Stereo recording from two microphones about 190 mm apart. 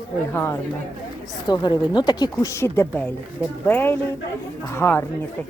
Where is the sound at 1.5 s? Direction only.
25° left (ahead or behind).